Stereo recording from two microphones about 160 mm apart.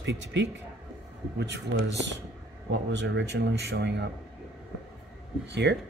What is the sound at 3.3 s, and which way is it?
Speech, 90° right.